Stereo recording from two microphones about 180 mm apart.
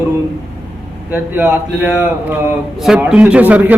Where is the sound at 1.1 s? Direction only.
10° right (ahead or behind).